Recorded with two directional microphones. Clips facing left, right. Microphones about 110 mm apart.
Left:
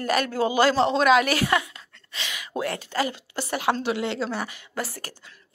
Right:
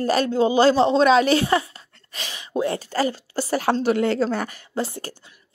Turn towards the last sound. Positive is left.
turn(degrees=-25)  # may be behind; listen again after turning